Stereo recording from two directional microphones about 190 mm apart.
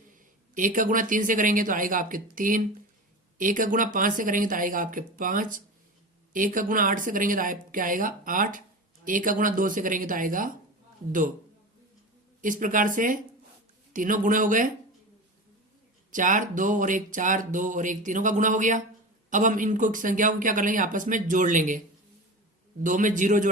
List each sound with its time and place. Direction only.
0.5 s speech: 45° right (ahead or behind)
12.4 s speech: 45° right (ahead or behind)
16.1 s speech: 45° right (ahead or behind)
22.8 s speech: 45° right (ahead or behind)